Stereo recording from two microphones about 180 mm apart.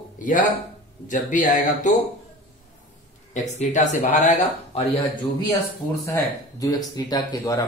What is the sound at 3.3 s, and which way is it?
Speech, 40° left (ahead or behind).